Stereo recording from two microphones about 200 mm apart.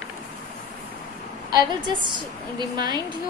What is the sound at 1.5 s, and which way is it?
A woman's voice, 20° right (ahead or behind).